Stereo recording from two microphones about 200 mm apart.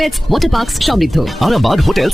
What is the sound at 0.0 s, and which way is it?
Speech, centre (ahead or behind).